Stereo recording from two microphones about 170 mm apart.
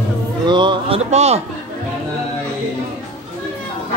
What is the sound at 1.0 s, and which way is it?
Speech, 40° right (ahead or behind).